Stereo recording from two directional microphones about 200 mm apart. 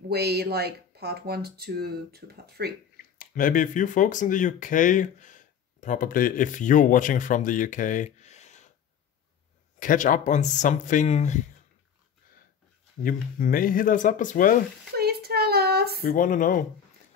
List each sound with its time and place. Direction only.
0.1 s speech: 55° right (ahead or behind)
3.2 s speech: 45° left (ahead or behind)
9.8 s speech: 40° left (ahead or behind)
13.0 s speech: 45° left (ahead or behind)
15.0 s a sound: 55° right (ahead or behind)
16.0 s speech: 45° left (ahead or behind)